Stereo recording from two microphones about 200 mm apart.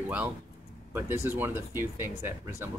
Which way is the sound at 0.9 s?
10° right (ahead or behind).